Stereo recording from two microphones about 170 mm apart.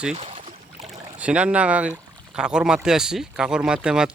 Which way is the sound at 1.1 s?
5° right (ahead or behind).